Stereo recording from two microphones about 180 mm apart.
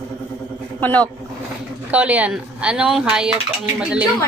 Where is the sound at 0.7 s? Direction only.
10° left (ahead or behind).